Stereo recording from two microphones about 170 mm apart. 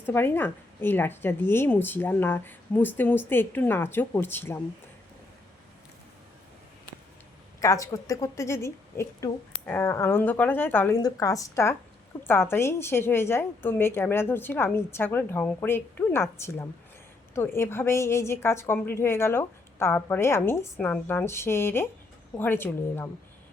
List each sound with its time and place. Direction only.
0.0 s a woman's voice: 15° left (ahead or behind)
7.6 s a woman's voice: 20° left (ahead or behind)